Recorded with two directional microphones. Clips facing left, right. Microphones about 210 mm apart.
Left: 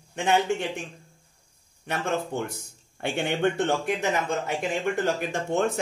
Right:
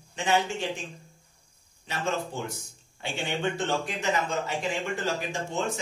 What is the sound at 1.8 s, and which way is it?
Speech, 60° left (ahead or behind).